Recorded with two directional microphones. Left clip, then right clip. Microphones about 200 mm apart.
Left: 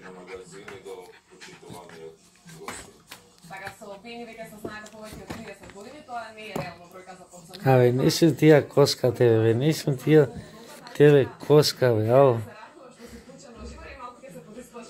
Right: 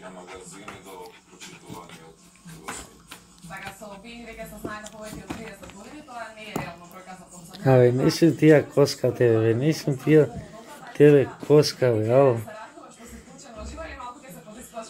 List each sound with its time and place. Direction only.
7.5 s speech: 15° left (ahead or behind)
8.0 s speech: 30° left (ahead or behind)